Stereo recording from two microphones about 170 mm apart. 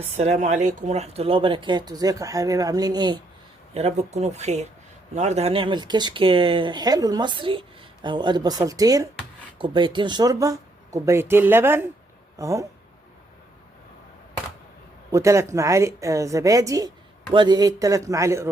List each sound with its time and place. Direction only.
0.0 s speech: 40° right (ahead or behind); by 3.2 s 25° right (ahead or behind)
3.8 s a woman's voice: 40° right (ahead or behind); by 12.6 s 20° right (ahead or behind)
15.1 s a woman's voice: 20° right (ahead or behind)